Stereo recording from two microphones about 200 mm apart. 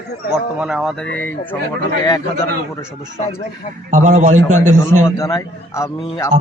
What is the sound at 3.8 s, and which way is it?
Speech, 35° right (ahead or behind).